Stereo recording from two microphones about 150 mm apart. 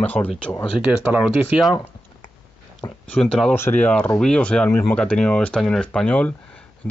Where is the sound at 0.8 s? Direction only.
5° right (ahead or behind).